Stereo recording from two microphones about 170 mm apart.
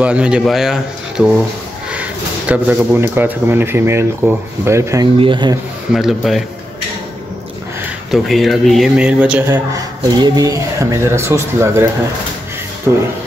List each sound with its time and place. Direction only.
0.0 s speech: 5° right (ahead or behind)
5.2 s speech: 25° right (ahead or behind)
5.9 s speech: centre (ahead or behind)
8.1 s speech: centre (ahead or behind)
10.0 s speech: 25° right (ahead or behind)